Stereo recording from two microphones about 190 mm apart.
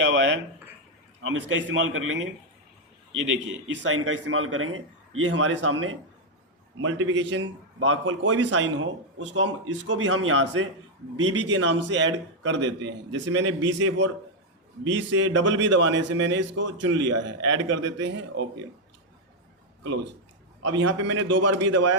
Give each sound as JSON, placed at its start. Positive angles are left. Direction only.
{"t": 0.0, "sound": "a sound", "side_deg": -70}
{"t": 1.2, "sound": "a man's voice", "side_deg": -90}
{"t": 3.7, "sound": "a man's voice", "side_deg": -90}
{"t": 7.8, "sound": "a man's voice", "side_deg": -90}
{"t": 21.2, "sound": "a man's voice", "side_deg": -75}